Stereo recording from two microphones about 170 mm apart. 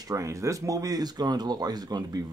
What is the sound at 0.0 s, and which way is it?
Speech, 20° right (ahead or behind).